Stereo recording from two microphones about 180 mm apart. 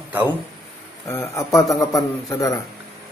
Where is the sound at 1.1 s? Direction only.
15° left (ahead or behind).